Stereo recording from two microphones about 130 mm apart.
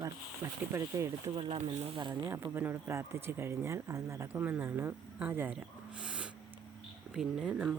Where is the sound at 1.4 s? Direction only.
45° right (ahead or behind).